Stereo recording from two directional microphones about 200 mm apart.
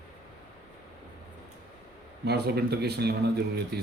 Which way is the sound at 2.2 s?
55° right (ahead or behind).